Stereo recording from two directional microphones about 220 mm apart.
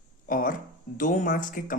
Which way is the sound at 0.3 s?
40° left (ahead or behind).